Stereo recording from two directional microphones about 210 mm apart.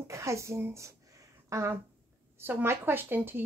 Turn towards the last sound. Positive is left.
turn(degrees=-10)  # may be behind; listen again after turning